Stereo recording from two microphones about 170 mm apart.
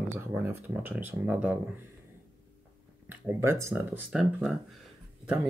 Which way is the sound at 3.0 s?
15° right (ahead or behind).